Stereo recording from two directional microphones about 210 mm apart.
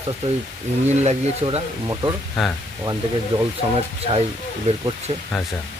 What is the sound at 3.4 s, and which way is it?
Speech, 25° right (ahead or behind).